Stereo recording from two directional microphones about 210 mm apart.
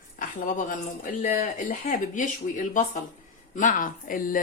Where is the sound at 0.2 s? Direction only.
40° left (ahead or behind).